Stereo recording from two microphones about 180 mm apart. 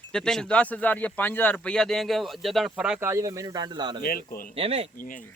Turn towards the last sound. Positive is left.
turn(degrees=-35)  # may be behind; listen again after turning